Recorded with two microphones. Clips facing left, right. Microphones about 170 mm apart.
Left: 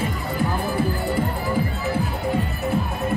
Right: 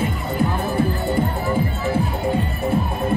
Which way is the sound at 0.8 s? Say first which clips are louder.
Right 4 dB; 25° right (ahead or behind).